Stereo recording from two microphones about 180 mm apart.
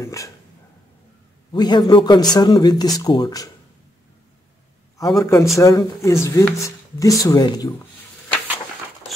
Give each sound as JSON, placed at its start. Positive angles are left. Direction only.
{"t": 0.0, "sound": "speech", "side_deg": 20}
{"t": 1.5, "sound": "speech", "side_deg": 25}
{"t": 4.9, "sound": "a man's voice", "side_deg": 15}